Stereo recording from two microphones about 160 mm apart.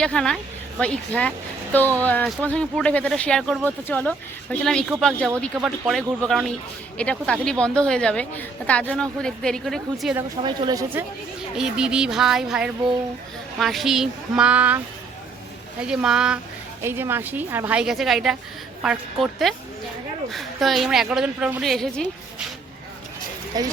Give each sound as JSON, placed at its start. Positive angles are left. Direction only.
{"t": 0.0, "sound": "a woman's voice", "side_deg": 5}
{"t": 10.4, "sound": "speech", "side_deg": -25}
{"t": 11.5, "sound": "a woman's voice", "side_deg": -5}
{"t": 15.8, "sound": "a woman's voice", "side_deg": -5}
{"t": 23.6, "sound": "speech", "side_deg": -25}